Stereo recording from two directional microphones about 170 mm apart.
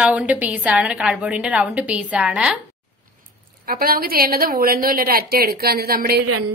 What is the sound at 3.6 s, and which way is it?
A woman's voice, 60° right (ahead or behind).